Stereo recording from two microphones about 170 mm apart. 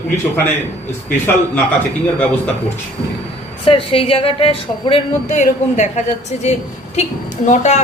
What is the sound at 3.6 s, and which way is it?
A woman's voice, 30° left (ahead or behind).